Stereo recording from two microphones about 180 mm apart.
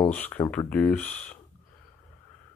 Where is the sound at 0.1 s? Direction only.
10° left (ahead or behind).